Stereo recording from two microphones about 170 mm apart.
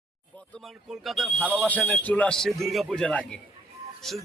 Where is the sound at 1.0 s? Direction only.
Centre (ahead or behind).